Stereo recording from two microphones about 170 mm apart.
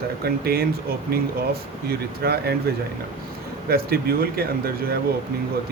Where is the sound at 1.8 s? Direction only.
70° right (ahead or behind).